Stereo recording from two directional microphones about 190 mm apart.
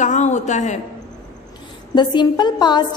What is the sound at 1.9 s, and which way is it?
Speech, 25° left (ahead or behind).